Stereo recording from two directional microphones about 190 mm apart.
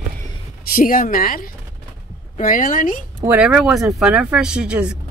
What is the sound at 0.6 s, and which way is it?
Speech, 50° left (ahead or behind).